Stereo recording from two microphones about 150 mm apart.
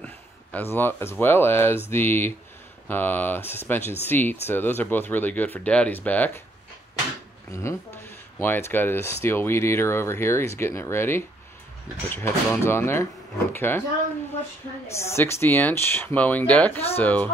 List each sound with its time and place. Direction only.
0.0 s speech: 10° left (ahead or behind)
7.5 s speech: 15° left (ahead or behind)
15.0 s speech: 15° left (ahead or behind)